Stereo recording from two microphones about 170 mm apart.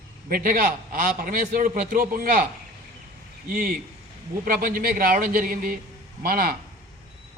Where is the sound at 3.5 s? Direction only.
55° right (ahead or behind).